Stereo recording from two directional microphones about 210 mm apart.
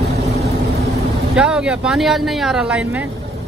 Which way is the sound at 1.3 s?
5° right (ahead or behind).